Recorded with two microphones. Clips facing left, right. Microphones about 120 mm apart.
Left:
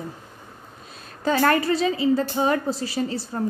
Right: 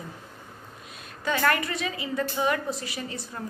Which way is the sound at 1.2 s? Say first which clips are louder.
Left 5 dB; 35° left (ahead or behind).